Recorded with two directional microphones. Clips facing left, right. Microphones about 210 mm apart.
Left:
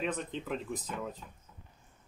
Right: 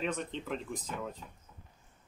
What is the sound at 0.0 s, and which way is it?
Speech, 5° left (ahead or behind).